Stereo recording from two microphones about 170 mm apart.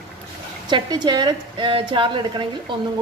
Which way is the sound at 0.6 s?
25° right (ahead or behind).